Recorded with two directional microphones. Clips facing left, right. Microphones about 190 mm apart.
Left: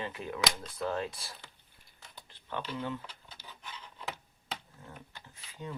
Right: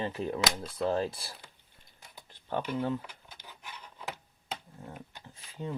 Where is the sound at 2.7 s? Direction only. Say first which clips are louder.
Right 6 dB; 40° right (ahead or behind).